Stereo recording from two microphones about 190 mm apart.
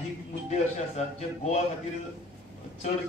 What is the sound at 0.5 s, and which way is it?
Speech, 35° left (ahead or behind).